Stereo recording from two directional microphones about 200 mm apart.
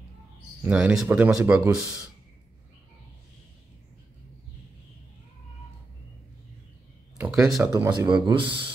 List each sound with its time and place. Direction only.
0.7 s speech: 5° right (ahead or behind)
7.2 s a sound: 5° right (ahead or behind)
7.6 s speech: 15° right (ahead or behind)